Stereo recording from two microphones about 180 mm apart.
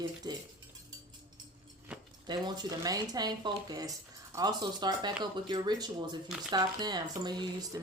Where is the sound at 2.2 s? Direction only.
25° right (ahead or behind).